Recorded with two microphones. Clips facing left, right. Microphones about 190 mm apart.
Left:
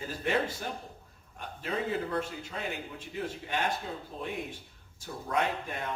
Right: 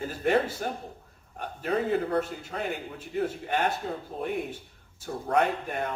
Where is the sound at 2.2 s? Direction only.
45° right (ahead or behind).